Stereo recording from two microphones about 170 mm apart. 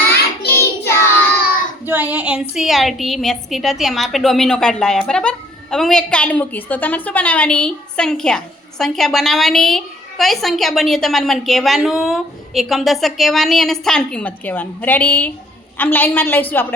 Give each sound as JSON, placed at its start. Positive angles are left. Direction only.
{"t": 0.1, "sound": "child singing", "side_deg": 15}
{"t": 1.8, "sound": "a woman's voice", "side_deg": -10}